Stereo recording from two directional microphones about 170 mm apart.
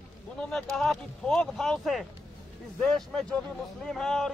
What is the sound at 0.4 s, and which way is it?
Speech, centre (ahead or behind).